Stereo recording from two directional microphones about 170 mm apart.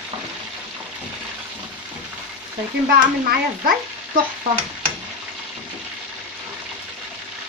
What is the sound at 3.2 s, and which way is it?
Frying, 60° right (ahead or behind).